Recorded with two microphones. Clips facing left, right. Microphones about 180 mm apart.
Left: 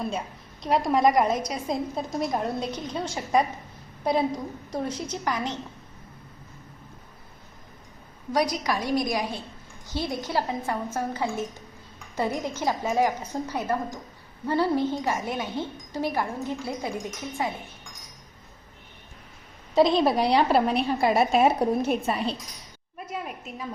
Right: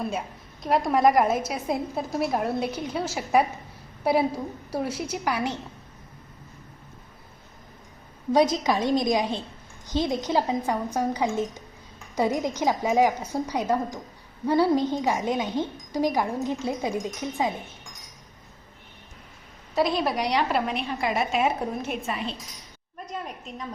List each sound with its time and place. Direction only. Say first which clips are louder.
0.6 s a woman's voice: right 1 dB; centre (ahead or behind)
8.3 s a woman's voice: right 4 dB; 25° right (ahead or behind)
19.7 s a woman's voice: left 4 dB; 25° left (ahead or behind)
23.0 s a sound: left 1 dB; 5° left (ahead or behind)